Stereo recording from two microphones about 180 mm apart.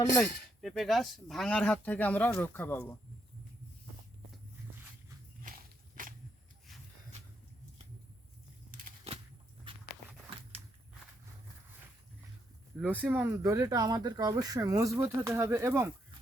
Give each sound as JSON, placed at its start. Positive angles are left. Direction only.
{"t": 0.2, "sound": "speech", "side_deg": 0}
{"t": 6.0, "sound": "a sound", "side_deg": -50}
{"t": 9.7, "sound": "walk", "side_deg": -30}
{"t": 12.8, "sound": "speech", "side_deg": -10}